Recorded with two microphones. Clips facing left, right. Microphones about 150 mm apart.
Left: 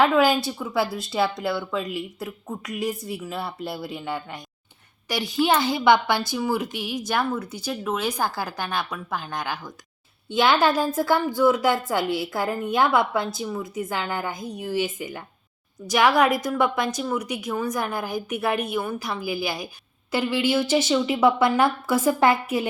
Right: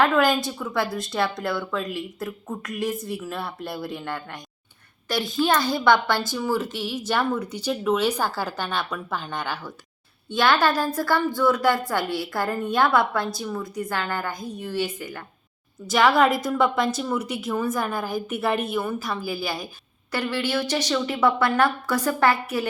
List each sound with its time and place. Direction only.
0.0 s a woman's voice: 5° left (ahead or behind)